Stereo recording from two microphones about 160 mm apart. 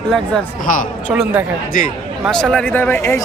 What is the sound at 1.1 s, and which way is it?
Speech, 10° right (ahead or behind).